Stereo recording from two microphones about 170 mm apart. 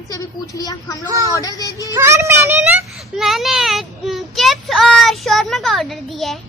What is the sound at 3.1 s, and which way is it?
Speech, centre (ahead or behind).